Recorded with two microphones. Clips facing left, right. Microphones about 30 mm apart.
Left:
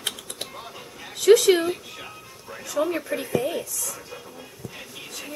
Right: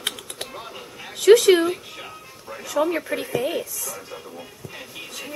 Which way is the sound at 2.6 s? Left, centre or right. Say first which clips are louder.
Right 3 dB; centre.